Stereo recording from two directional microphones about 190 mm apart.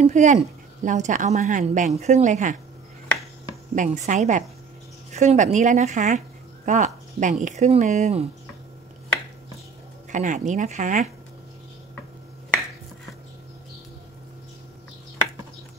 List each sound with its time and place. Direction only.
0.0 s a woman's voice: 40° right (ahead or behind)
3.7 s a woman's voice: 40° right (ahead or behind)
10.1 s a woman's voice: 40° right (ahead or behind)